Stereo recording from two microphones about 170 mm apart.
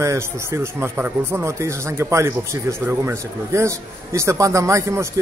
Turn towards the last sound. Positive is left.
turn(degrees=-15)  # may be behind; listen again after turning